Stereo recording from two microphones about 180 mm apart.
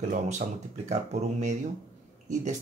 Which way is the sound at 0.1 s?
40° right (ahead or behind).